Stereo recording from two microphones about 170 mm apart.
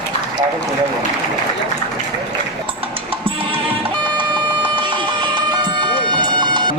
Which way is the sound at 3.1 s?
30° right (ahead or behind).